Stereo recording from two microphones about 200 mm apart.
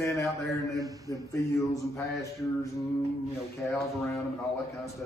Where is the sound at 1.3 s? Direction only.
15° left (ahead or behind).